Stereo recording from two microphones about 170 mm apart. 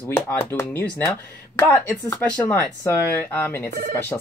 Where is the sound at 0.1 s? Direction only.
15° left (ahead or behind).